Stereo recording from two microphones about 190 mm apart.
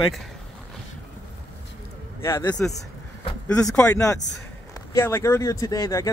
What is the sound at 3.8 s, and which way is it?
Speech, 15° left (ahead or behind).